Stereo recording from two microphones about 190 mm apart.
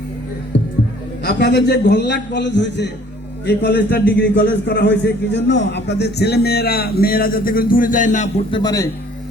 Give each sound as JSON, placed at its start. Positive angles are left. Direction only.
{"t": 1.2, "sound": "a man's voice", "side_deg": 55}
{"t": 8.4, "sound": "a man's voice", "side_deg": 25}